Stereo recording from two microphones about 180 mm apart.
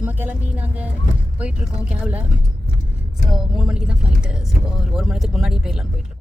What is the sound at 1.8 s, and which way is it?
Speech, 5° right (ahead or behind).